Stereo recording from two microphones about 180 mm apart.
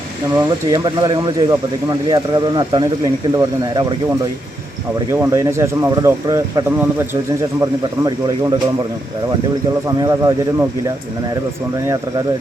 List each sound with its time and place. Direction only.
0.3 s speech: 20° right (ahead or behind)
5.1 s speech: 15° right (ahead or behind)
9.8 s speech: 20° right (ahead or behind)